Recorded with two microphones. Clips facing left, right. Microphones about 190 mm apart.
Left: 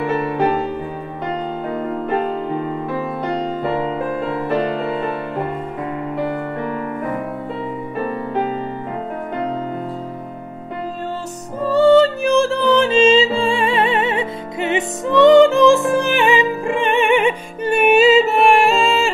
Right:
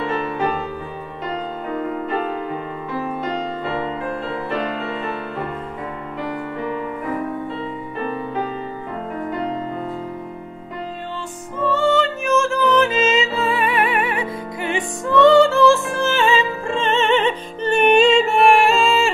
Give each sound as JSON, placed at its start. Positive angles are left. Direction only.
{"t": 11.6, "sound": "music", "side_deg": 35}